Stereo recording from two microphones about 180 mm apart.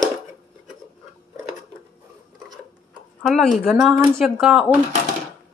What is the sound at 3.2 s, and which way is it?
Speech, centre (ahead or behind).